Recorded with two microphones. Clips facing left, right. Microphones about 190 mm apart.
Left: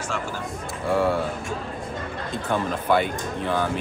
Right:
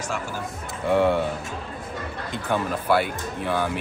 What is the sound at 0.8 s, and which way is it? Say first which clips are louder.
Speech: right 2 dB; 20° right (ahead or behind).